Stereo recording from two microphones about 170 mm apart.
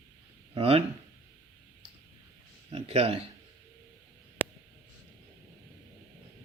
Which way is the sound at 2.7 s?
35° right (ahead or behind).